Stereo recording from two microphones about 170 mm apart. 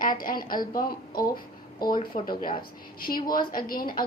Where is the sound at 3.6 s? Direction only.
55° left (ahead or behind).